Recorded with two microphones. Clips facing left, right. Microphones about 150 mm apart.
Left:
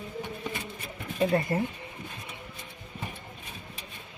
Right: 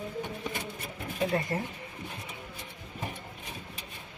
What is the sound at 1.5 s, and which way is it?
Speech, 20° left (ahead or behind).